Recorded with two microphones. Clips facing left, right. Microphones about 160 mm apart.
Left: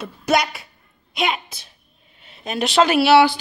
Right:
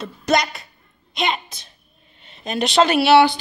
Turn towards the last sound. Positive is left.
turn(degrees=5)  # may be behind; listen again after turning